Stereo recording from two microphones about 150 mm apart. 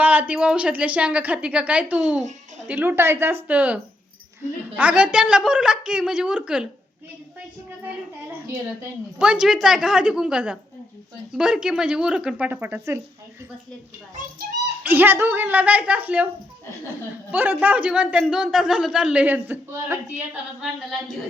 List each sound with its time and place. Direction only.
0.0 s speech: 10° right (ahead or behind)
4.8 s a woman's voice: 10° right (ahead or behind)
9.1 s a woman's voice: 5° right (ahead or behind)
14.2 s a child's voice: 60° right (ahead or behind)
14.8 s speech: 15° right (ahead or behind)
17.3 s speech: 10° right (ahead or behind)